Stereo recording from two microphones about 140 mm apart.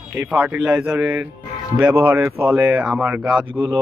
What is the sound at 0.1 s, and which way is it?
Speech, 10° right (ahead or behind).